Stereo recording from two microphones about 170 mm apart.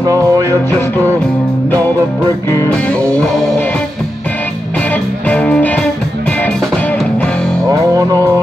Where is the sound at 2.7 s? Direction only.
5° left (ahead or behind).